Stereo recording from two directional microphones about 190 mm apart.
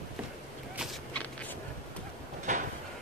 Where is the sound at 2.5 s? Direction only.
40° right (ahead or behind).